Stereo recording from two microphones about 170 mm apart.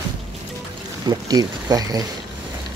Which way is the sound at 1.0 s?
25° right (ahead or behind).